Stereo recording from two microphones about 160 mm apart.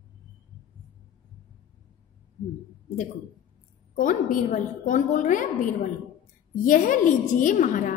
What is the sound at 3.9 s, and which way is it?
A woman's voice, 55° left (ahead or behind).